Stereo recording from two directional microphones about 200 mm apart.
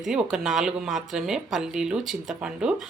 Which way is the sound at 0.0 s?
5° right (ahead or behind).